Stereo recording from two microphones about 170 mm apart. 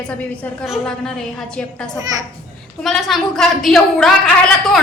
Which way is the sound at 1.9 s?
20° right (ahead or behind).